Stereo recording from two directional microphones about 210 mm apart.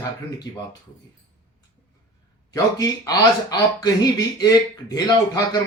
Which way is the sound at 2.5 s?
15° left (ahead or behind).